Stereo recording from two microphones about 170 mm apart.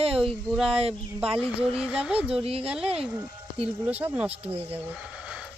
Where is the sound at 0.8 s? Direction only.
35° right (ahead or behind).